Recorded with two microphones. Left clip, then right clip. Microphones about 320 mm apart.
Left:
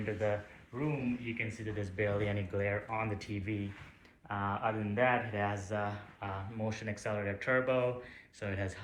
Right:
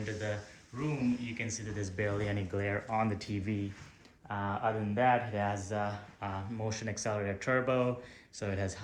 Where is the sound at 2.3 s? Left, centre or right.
Right.